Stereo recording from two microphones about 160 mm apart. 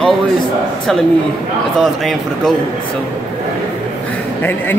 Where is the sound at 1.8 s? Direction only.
Centre (ahead or behind).